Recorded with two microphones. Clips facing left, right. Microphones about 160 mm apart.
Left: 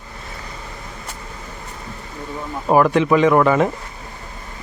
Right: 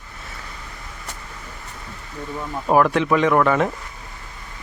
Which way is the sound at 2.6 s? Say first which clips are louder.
Left 3 dB; 5° left (ahead or behind).